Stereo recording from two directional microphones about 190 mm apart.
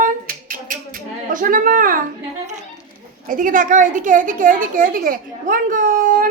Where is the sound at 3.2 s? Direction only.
45° right (ahead or behind).